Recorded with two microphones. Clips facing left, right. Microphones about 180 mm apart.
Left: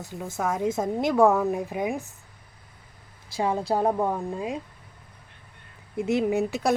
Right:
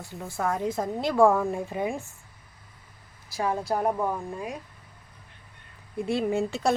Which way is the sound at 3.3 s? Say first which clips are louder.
Left 2 dB; 20° left (ahead or behind).